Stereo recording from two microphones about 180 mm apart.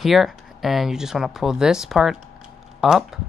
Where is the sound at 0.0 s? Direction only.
Centre (ahead or behind).